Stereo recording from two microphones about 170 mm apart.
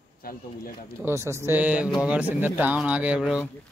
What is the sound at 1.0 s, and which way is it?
Speech, 15° right (ahead or behind).